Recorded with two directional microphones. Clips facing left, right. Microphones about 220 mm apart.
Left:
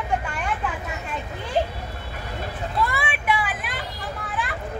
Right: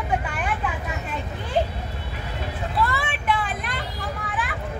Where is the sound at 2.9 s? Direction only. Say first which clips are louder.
Even; 10° left (ahead or behind).